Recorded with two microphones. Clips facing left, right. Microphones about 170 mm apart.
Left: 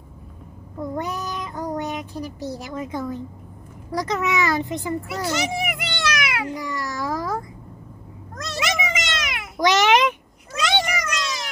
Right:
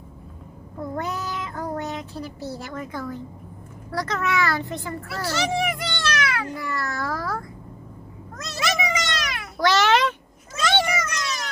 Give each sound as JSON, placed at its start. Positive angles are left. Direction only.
{"t": 0.9, "sound": "child singing", "side_deg": 15}
{"t": 3.9, "sound": "a child's voice", "side_deg": 15}
{"t": 8.5, "sound": "a sound", "side_deg": 20}
{"t": 10.7, "sound": "cat", "side_deg": 15}